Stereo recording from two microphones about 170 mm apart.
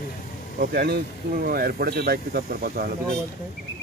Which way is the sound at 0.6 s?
60° right (ahead or behind).